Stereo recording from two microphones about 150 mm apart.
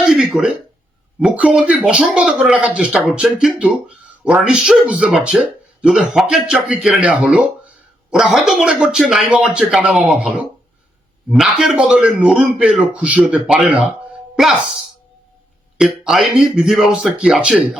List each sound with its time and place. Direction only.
0.0 s a sound: centre (ahead or behind)
1.2 s speech: 10° right (ahead or behind)
15.8 s speech: centre (ahead or behind)